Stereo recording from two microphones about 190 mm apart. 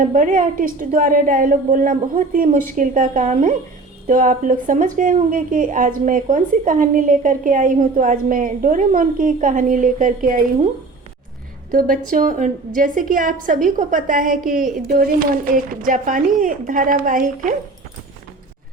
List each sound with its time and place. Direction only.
0.0 s a woman's voice: 45° right (ahead or behind)
11.7 s a woman's voice: 45° right (ahead or behind)